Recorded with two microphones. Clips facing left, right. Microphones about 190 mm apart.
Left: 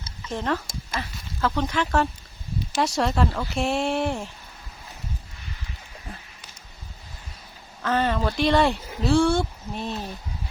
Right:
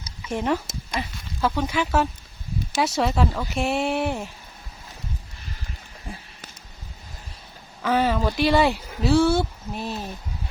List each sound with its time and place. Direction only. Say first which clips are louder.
0.0 s speech: right 3 dB; 10° right (ahead or behind)
7.8 s speech: right 2 dB; 10° right (ahead or behind)